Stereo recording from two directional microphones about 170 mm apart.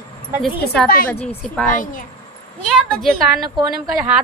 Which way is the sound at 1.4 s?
5° left (ahead or behind).